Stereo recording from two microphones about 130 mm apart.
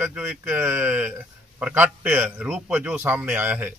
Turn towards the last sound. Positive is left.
turn(degrees=-15)  # may be behind; listen again after turning